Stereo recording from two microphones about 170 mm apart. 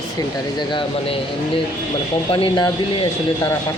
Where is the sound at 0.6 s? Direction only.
30° left (ahead or behind).